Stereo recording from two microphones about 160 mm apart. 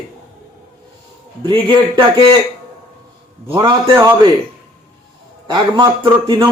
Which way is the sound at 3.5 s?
30° right (ahead or behind).